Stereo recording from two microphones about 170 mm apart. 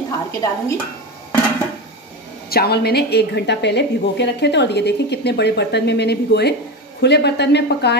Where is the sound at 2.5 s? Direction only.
70° left (ahead or behind).